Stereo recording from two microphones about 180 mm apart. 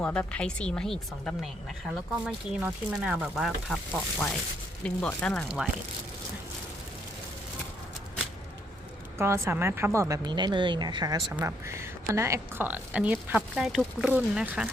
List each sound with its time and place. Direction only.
0.0 s speech: 5° left (ahead or behind)
2.2 s a woman's voice: 10° right (ahead or behind); by 5.6 s 5° left (ahead or behind)
9.1 s a woman's voice: 15° right (ahead or behind)